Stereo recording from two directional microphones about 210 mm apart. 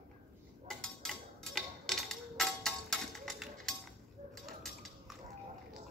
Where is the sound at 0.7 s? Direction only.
Centre (ahead or behind).